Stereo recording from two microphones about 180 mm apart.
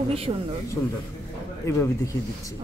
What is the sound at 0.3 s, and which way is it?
Speech, 30° right (ahead or behind).